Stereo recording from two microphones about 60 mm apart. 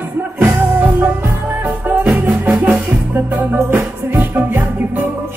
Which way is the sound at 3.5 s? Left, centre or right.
Right.